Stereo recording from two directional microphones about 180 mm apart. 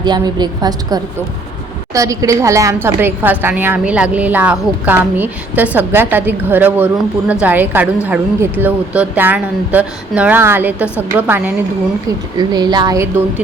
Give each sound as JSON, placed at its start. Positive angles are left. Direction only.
{"t": 0.0, "sound": "a woman's voice", "side_deg": -25}
{"t": 12.4, "sound": "a woman's voice", "side_deg": -25}